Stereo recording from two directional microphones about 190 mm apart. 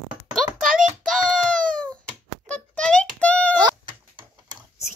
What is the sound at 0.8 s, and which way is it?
Child singing, 45° right (ahead or behind).